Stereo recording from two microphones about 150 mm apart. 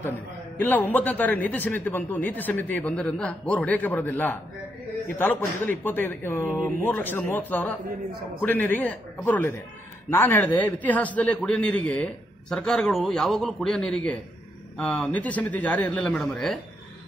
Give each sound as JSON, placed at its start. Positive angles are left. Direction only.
{"t": 0.6, "sound": "speech", "side_deg": 10}